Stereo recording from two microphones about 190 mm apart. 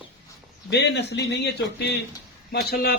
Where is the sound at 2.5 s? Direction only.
55° left (ahead or behind).